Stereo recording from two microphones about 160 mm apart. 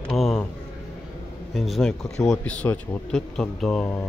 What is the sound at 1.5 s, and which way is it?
A man's voice, centre (ahead or behind).